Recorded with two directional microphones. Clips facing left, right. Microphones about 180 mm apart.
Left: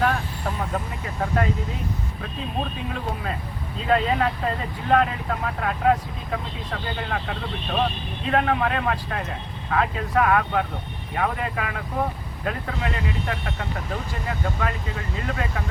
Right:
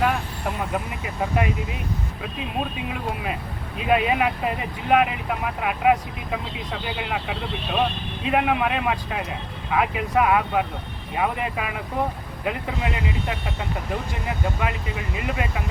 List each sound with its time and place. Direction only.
0.7 s speech: 10° right (ahead or behind)
3.8 s speech: 15° right (ahead or behind)